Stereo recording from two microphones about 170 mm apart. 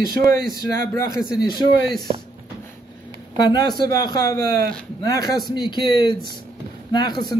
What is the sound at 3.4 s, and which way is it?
A man's voice, 25° left (ahead or behind).